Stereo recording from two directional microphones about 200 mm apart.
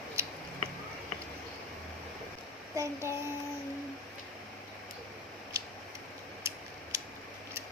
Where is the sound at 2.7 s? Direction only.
15° right (ahead or behind).